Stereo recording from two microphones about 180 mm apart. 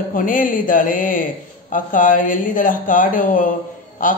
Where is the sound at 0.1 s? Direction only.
50° left (ahead or behind).